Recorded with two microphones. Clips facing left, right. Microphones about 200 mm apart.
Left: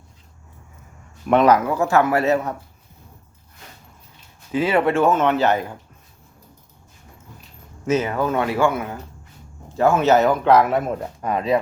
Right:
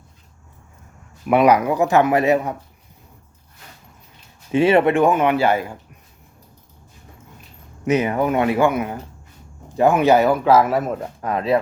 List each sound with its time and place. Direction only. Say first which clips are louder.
1.3 s speech: right 1 dB; 10° right (ahead or behind)
4.5 s speech: right 4 dB; 25° right (ahead or behind); by 5.7 s 10° right (ahead or behind)
7.9 s speech: right 2 dB; 15° right (ahead or behind); by 11.6 s centre (ahead or behind)